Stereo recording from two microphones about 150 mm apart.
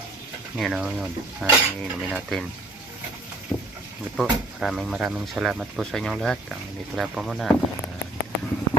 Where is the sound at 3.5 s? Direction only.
15° left (ahead or behind).